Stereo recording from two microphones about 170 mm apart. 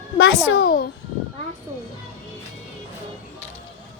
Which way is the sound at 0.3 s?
65° left (ahead or behind).